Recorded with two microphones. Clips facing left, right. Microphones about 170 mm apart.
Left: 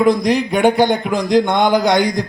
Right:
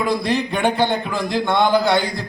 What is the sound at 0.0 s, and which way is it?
Speech, 15° left (ahead or behind).